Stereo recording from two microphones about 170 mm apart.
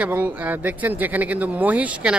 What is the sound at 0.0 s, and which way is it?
Speech, 10° right (ahead or behind).